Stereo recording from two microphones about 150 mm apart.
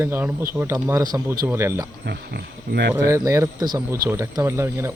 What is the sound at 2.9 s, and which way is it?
Speech, 20° right (ahead or behind).